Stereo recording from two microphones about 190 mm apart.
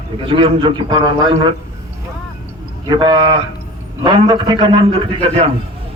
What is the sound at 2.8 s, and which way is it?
A man's voice, 20° right (ahead or behind).